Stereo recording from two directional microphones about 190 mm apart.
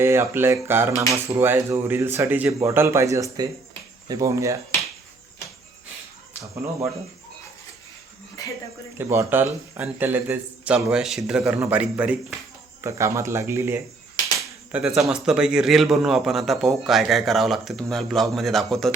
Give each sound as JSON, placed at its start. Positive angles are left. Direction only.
{"t": 0.0, "sound": "speech", "side_deg": -10}
{"t": 8.4, "sound": "a sound", "side_deg": 20}
{"t": 9.0, "sound": "speech", "side_deg": -10}